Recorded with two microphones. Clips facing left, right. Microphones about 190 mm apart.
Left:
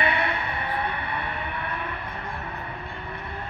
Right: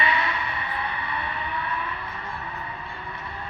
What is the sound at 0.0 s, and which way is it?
Music, 60° left (ahead or behind).